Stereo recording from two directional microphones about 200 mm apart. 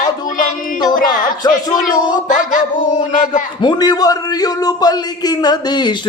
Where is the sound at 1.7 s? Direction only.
20° left (ahead or behind).